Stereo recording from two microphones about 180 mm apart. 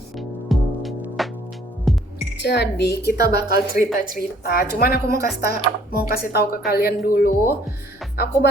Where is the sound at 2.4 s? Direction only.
70° left (ahead or behind).